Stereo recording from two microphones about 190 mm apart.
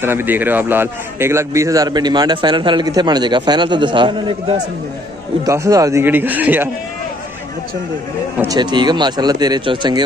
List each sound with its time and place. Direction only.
0.0 s a man's voice: 10° right (ahead or behind)
8.4 s a man's voice: 20° right (ahead or behind)